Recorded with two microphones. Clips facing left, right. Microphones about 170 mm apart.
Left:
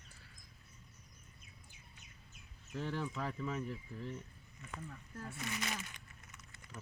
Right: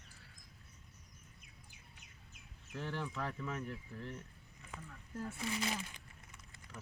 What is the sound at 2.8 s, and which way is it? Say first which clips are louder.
Speech: left 1 dB; 10° left (ahead or behind).